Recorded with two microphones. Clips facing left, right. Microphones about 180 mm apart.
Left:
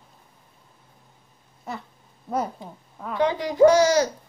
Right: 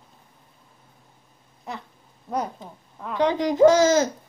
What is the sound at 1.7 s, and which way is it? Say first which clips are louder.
Cat: left 1 dB; centre (ahead or behind).